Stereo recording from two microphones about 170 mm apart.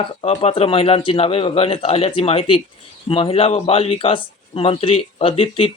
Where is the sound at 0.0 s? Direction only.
35° left (ahead or behind).